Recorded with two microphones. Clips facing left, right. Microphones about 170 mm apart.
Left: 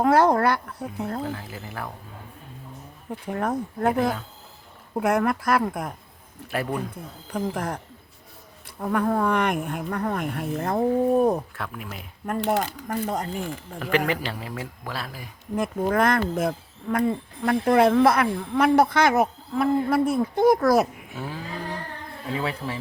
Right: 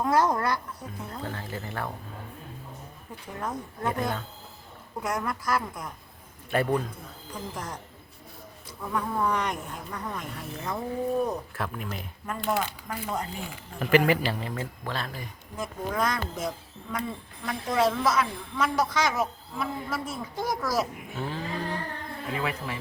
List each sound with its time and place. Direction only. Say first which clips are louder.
0.0 s speech: left 6 dB; 65° left (ahead or behind)
1.2 s a man's voice: left 3 dB; 5° left (ahead or behind)
3.3 s speech: left 7 dB; 60° left (ahead or behind)
6.5 s a man's voice: right 2 dB; 5° left (ahead or behind)
7.3 s speech: left 9 dB; 60° left (ahead or behind)
8.8 s speech: left 6 dB; 65° left (ahead or behind)
11.5 s a man's voice: right 1 dB; centre (ahead or behind)
12.5 s speech: left 3 dB; 45° left (ahead or behind)
13.7 s a man's voice: right 3 dB; centre (ahead or behind)
15.5 s speech: left 8 dB; 60° left (ahead or behind)
21.2 s cattle: even; 10° left (ahead or behind)
22.4 s speech: left 3 dB; 30° left (ahead or behind)